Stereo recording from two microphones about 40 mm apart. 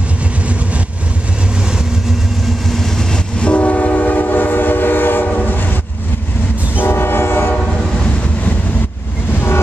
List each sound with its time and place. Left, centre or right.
2.7 s vehicle: centre
3.3 s train: left
6.8 s train: left